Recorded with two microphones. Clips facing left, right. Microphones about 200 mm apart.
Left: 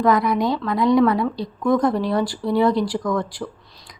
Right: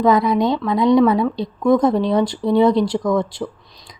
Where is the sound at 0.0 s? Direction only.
25° right (ahead or behind).